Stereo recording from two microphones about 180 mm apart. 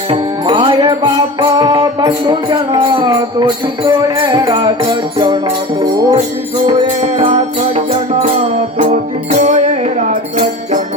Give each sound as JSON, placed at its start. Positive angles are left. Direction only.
{"t": 0.1, "sound": "music", "side_deg": -25}
{"t": 8.8, "sound": "music", "side_deg": -40}